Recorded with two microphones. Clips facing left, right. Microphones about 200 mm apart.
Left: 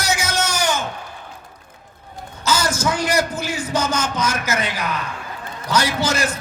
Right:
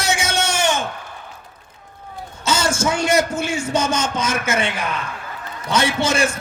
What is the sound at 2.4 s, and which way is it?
A man's voice, 25° right (ahead or behind).